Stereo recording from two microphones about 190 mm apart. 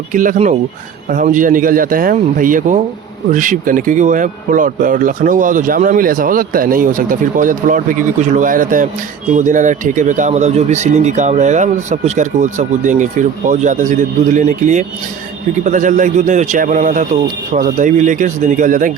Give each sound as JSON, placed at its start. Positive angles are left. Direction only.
{"t": 0.1, "sound": "speech", "side_deg": -45}